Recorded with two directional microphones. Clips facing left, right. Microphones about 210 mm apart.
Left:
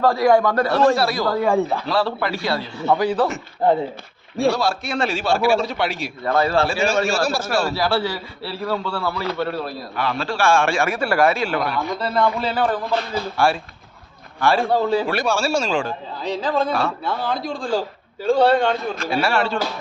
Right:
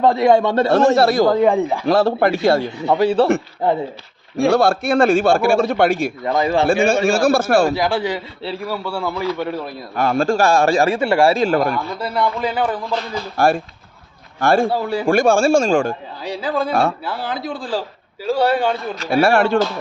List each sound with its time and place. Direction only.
0.0 s a man's voice: 20° right (ahead or behind)
0.9 s a man's voice: 50° right (ahead or behind)
1.2 s a man's voice: 20° right (ahead or behind)
1.9 s a man's voice: 45° right (ahead or behind)
2.7 s a man's voice: 20° right (ahead or behind)
4.4 s a man's voice: 55° right (ahead or behind)
6.2 s a man's voice: 15° right (ahead or behind)
6.7 s a man's voice: 50° right (ahead or behind)
7.7 s a man's voice: 15° right (ahead or behind)
9.9 s a man's voice: 45° right (ahead or behind)
11.9 s a man's voice: 10° right (ahead or behind)
13.3 s a man's voice: 45° right (ahead or behind)
16.2 s a man's voice: 10° right (ahead or behind)
19.1 s a man's voice: 50° right (ahead or behind)